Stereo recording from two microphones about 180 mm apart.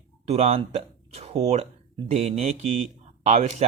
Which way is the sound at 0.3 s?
35° right (ahead or behind).